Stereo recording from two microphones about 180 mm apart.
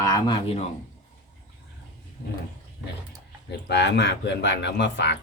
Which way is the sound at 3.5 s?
70° left (ahead or behind).